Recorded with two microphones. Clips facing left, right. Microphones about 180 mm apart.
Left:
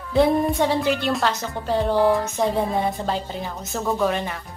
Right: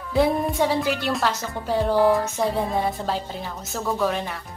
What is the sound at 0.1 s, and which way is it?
A woman's voice, 5° right (ahead or behind).